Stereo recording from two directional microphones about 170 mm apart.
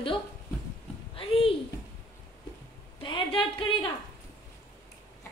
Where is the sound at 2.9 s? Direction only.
30° left (ahead or behind).